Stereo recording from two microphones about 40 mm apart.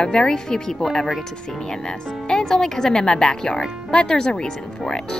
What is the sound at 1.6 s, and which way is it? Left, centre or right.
A child's voice, centre.